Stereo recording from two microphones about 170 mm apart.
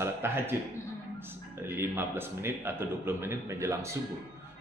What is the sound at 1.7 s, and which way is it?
A man's voice, 15° right (ahead or behind).